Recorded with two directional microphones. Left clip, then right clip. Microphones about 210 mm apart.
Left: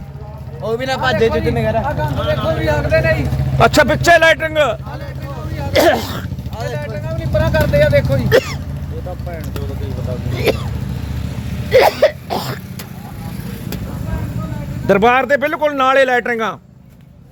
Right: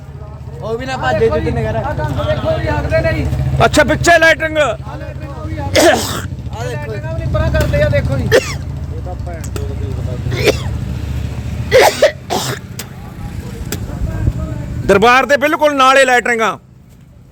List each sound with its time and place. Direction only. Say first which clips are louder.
0.6 s speech: left 1 dB; 25° left (ahead or behind)
1.1 s speech: right 4 dB; 50° left (ahead or behind)
3.6 s speech: right 1 dB; centre (ahead or behind)
5.7 s speech: right 2 dB; 15° right (ahead or behind)
7.3 s speech: left 2 dB; 50° left (ahead or behind)
8.3 s a sound: right 2 dB; 10° right (ahead or behind)
10.3 s speech: right 3 dB; 15° right (ahead or behind)
11.7 s cough: right 2 dB; 20° right (ahead or behind)
14.8 s a man's voice: right 3 dB; 20° right (ahead or behind)